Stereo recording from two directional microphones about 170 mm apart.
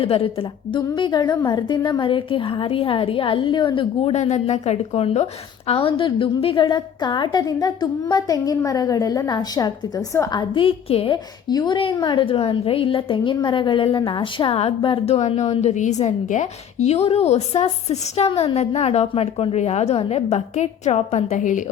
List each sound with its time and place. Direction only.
0.0 s a woman's voice: 35° left (ahead or behind)